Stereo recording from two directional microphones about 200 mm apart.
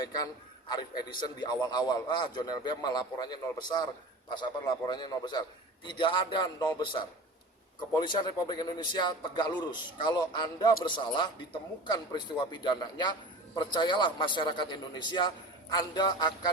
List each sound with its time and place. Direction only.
0.8 s a man's voice: 20° left (ahead or behind)